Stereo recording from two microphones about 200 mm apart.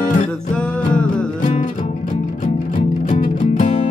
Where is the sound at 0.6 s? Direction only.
5° left (ahead or behind).